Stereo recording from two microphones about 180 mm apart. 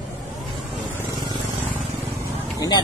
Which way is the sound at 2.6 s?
20° left (ahead or behind).